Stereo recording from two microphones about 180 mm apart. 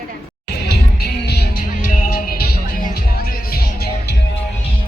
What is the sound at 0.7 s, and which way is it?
Music, 60° left (ahead or behind).